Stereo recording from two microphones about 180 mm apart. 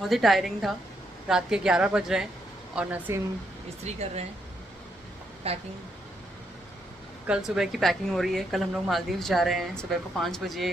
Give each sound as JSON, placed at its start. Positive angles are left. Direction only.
{"t": 0.1, "sound": "a woman's voice", "side_deg": 0}
{"t": 3.8, "sound": "speech", "side_deg": -35}
{"t": 5.4, "sound": "speech", "side_deg": -35}
{"t": 7.2, "sound": "a woman's voice", "side_deg": -5}